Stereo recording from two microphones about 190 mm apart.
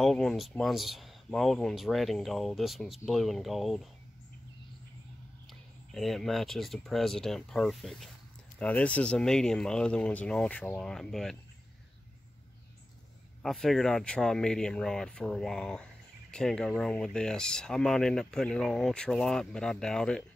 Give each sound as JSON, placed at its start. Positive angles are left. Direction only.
{"t": 0.0, "sound": "speech", "side_deg": 0}
{"t": 5.5, "sound": "speech", "side_deg": 0}
{"t": 13.4, "sound": "speech", "side_deg": 0}